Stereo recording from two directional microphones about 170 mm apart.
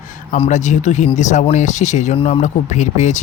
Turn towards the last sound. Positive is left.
turn(degrees=45)  # may be behind; listen again after turning